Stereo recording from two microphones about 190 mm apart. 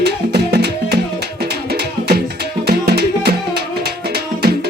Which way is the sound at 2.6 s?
60° right (ahead or behind).